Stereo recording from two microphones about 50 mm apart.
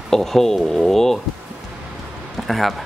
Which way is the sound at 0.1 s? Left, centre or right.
Centre.